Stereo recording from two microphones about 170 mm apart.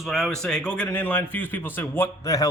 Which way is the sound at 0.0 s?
Centre (ahead or behind).